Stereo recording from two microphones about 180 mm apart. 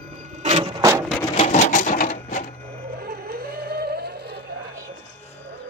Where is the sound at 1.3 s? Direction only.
40° left (ahead or behind).